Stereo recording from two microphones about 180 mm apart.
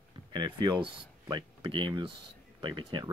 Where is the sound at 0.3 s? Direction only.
25° right (ahead or behind).